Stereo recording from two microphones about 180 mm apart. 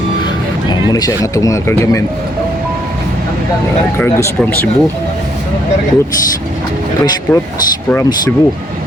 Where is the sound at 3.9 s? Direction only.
10° left (ahead or behind).